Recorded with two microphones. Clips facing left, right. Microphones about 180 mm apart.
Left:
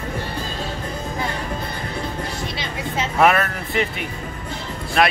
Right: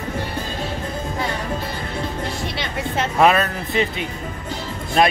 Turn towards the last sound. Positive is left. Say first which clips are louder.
# right 2 dB
turn(degrees=-30)  # may be behind; listen again after turning